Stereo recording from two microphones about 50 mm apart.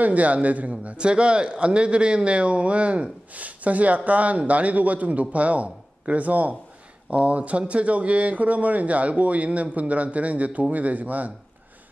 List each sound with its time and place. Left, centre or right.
0.0 s speech: right